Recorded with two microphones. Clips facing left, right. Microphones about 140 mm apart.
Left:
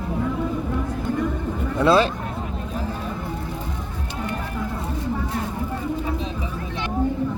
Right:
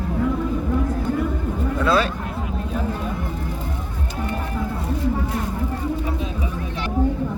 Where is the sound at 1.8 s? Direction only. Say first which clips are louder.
Left 3 dB; 25° left (ahead or behind).